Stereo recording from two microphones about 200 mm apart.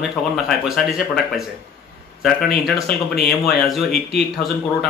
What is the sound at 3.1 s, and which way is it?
Speech, 55° left (ahead or behind).